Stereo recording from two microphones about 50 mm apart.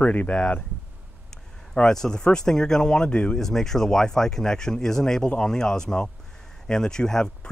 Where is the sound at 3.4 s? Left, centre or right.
Centre.